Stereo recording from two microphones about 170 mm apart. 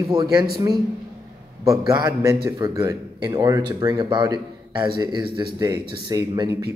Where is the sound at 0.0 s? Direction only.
20° right (ahead or behind).